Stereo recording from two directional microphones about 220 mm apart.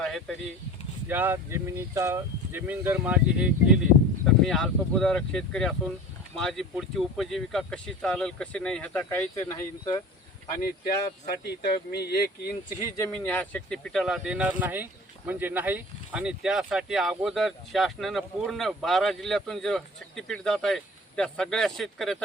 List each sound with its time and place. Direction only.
0.0 s a sound: 5° left (ahead or behind)
1.0 s speech: 10° right (ahead or behind); by 10.0 s 20° left (ahead or behind)
11.4 s speech: 50° left (ahead or behind)
13.0 s speech: 10° left (ahead or behind)